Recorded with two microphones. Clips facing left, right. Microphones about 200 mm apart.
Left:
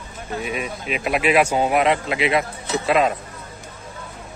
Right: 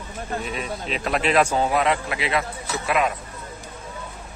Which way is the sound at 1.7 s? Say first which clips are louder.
Left 3 dB; 20° left (ahead or behind).